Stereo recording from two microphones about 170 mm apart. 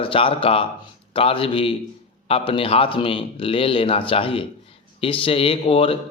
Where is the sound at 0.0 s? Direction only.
30° left (ahead or behind).